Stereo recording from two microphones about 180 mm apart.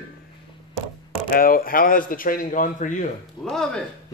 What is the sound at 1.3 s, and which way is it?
A man's voice, 55° left (ahead or behind).